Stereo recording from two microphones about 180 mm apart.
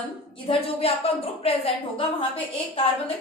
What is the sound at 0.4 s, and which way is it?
A woman's voice, 35° left (ahead or behind).